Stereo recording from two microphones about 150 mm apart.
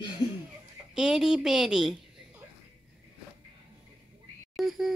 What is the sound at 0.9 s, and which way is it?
Speech, 5° right (ahead or behind).